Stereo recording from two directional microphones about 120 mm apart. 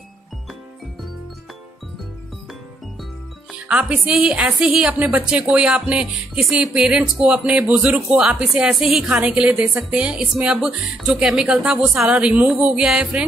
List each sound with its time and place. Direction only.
3.6 s a woman's voice: 5° right (ahead or behind)